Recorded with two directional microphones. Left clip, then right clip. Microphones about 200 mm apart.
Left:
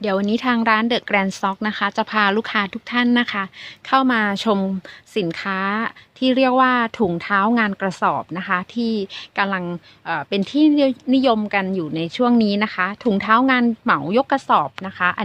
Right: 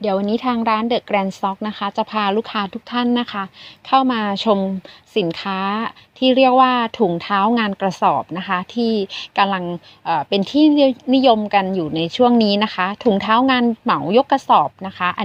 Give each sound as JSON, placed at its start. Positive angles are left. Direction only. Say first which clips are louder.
{"t": 0.0, "sound": "a woman's voice", "louder": "right 1 dB", "side_deg": 0}